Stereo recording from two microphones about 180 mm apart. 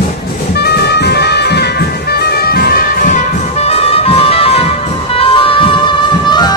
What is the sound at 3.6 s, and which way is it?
Music, 35° left (ahead or behind).